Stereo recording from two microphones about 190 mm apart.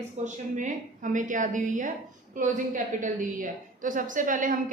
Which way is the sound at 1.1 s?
40° right (ahead or behind).